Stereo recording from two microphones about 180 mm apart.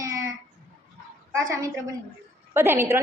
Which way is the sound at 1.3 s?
15° right (ahead or behind).